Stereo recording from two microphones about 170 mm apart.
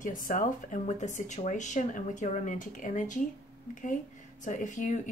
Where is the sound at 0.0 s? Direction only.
50° left (ahead or behind).